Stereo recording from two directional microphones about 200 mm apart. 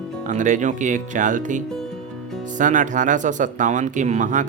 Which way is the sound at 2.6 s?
40° right (ahead or behind).